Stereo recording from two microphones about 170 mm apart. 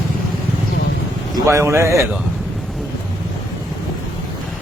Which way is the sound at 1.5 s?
15° right (ahead or behind).